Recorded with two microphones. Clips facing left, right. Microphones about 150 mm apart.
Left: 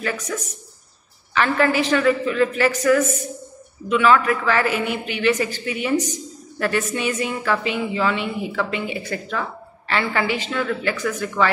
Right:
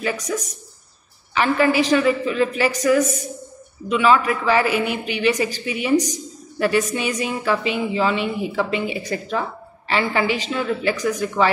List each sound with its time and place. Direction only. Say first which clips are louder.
0.0 s a woman's voice: right 2 dB; 15° right (ahead or behind)